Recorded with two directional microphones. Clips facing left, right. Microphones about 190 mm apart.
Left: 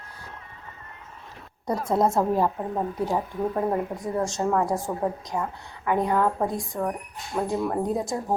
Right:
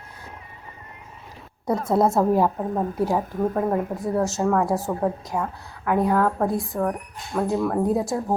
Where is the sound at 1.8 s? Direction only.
5° right (ahead or behind).